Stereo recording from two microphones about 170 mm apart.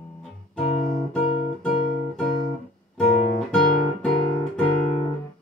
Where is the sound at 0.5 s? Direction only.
Centre (ahead or behind).